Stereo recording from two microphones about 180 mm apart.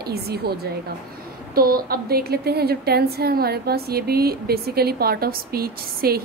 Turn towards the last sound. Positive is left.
turn(degrees=-55)  # may be behind; listen again after turning